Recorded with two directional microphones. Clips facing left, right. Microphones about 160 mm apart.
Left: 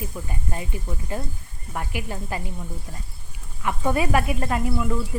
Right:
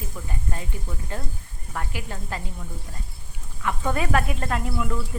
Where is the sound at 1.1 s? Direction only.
10° left (ahead or behind).